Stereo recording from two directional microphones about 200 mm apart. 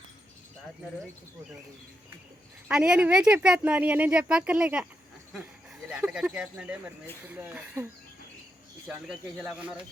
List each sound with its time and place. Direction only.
2.6 s speech: 5° right (ahead or behind)
5.9 s speech: 5° right (ahead or behind)
8.9 s speech: 5° right (ahead or behind)